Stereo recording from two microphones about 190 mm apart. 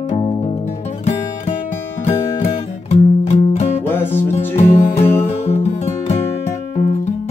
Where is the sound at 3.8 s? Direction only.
10° left (ahead or behind).